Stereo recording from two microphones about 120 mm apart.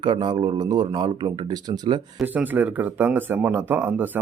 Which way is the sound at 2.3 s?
15° right (ahead or behind).